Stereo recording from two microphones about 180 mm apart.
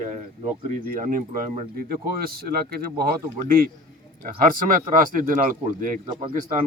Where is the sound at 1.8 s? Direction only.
55° right (ahead or behind).